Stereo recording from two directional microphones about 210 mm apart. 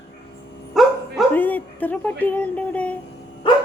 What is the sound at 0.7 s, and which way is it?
Bow-wow, 5° left (ahead or behind).